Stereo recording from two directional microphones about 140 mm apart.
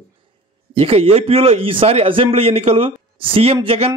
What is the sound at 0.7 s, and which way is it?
A man's voice, 45° right (ahead or behind).